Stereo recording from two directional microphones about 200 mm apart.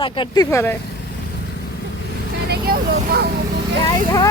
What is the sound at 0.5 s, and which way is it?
Speech, 10° left (ahead or behind).